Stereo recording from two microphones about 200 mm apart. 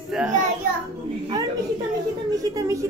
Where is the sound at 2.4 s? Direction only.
15° right (ahead or behind).